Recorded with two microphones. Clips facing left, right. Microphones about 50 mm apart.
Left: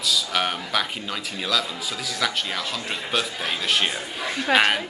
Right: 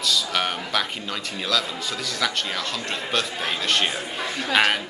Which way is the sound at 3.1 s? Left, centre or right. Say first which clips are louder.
Even; centre.